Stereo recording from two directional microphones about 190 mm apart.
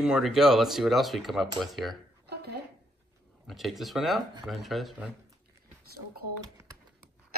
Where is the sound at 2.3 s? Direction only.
60° right (ahead or behind).